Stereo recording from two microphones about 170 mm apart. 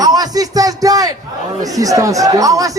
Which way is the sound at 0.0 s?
20° right (ahead or behind).